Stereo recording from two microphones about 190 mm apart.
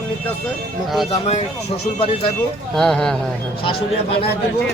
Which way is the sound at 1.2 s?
35° left (ahead or behind).